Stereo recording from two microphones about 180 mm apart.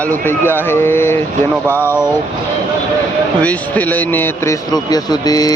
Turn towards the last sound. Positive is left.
turn(degrees=20)  # may be behind; listen again after turning